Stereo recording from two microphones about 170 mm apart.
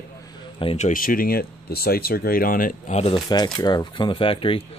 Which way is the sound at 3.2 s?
25° left (ahead or behind).